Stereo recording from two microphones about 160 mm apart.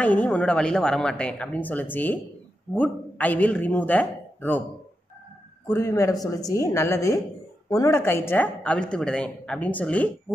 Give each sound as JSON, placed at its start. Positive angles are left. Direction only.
{"t": 0.0, "sound": "speech", "side_deg": 10}
{"t": 5.7, "sound": "a woman's voice", "side_deg": 15}